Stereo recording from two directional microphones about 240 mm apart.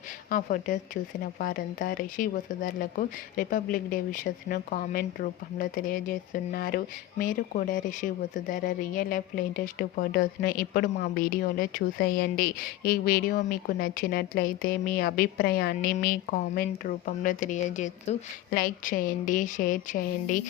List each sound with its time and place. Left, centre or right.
0.3 s speech: left